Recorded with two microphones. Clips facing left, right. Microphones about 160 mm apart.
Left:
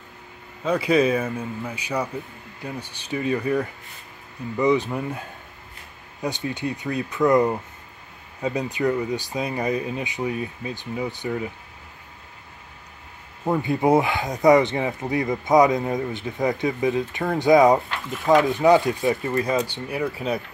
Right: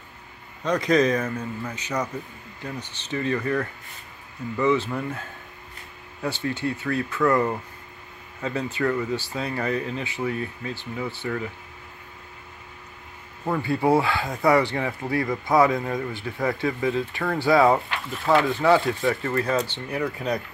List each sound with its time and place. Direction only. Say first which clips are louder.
0.7 s speech: left 1 dB; 10° left (ahead or behind)
6.2 s speech: even; 15° left (ahead or behind)
13.4 s speech: left 2 dB; 20° left (ahead or behind)